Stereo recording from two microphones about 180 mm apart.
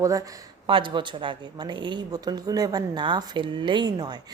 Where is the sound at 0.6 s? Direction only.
30° right (ahead or behind).